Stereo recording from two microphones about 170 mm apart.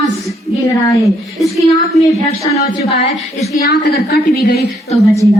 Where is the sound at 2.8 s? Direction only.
40° left (ahead or behind).